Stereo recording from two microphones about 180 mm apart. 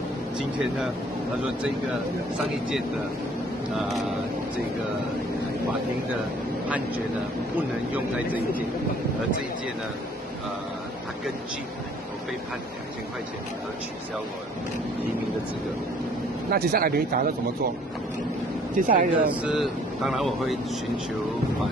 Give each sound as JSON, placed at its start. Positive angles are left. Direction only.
{"t": 0.4, "sound": "speech", "side_deg": -5}
{"t": 16.4, "sound": "speech", "side_deg": -60}
{"t": 18.8, "sound": "speech", "side_deg": -50}
{"t": 19.2, "sound": "speech", "side_deg": -5}